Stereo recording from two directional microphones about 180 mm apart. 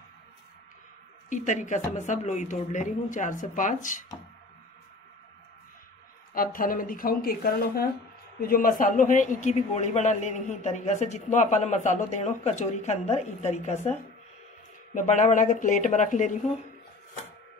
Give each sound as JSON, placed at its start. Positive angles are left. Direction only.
{"t": 1.3, "sound": "speech", "side_deg": 40}
{"t": 6.3, "sound": "speech", "side_deg": 50}
{"t": 15.0, "sound": "speech", "side_deg": 45}